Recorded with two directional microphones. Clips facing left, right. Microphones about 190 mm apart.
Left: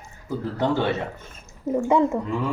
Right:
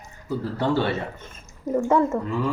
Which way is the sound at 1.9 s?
15° left (ahead or behind).